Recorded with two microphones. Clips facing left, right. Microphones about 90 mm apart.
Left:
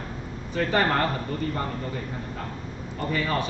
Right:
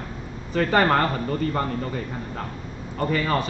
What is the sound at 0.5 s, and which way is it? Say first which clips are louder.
Speech: right 4 dB; 50° right (ahead or behind).